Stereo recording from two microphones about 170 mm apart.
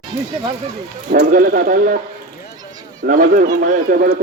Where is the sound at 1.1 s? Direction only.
60° right (ahead or behind).